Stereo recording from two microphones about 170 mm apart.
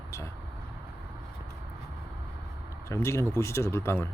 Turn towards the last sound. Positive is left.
turn(degrees=15)  # may be behind; listen again after turning